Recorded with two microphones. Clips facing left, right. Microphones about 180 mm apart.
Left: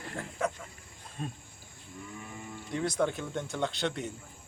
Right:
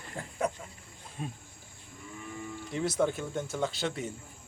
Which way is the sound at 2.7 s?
5° right (ahead or behind).